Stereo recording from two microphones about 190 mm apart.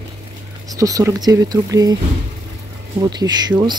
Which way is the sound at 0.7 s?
20° right (ahead or behind).